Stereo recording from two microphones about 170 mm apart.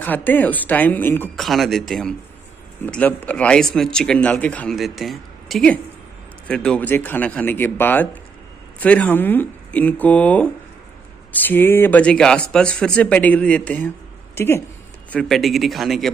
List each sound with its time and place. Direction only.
0.0 s speech: 10° left (ahead or behind)
1.3 s speech: centre (ahead or behind)